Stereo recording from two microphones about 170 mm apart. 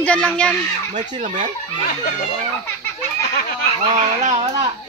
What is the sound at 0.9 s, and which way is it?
Speech, 45° right (ahead or behind).